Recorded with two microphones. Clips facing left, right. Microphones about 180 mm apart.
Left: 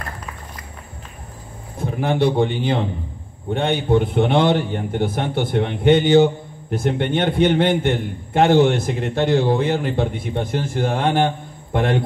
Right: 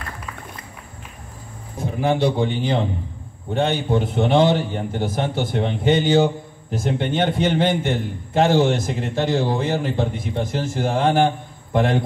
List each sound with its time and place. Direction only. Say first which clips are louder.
2.0 s a man's voice: left 1 dB; 55° left (ahead or behind)